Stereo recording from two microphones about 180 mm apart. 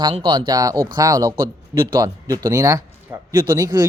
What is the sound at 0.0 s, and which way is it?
Speech, 25° right (ahead or behind).